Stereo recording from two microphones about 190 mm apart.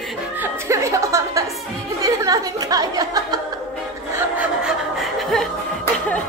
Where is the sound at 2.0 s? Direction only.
20° right (ahead or behind).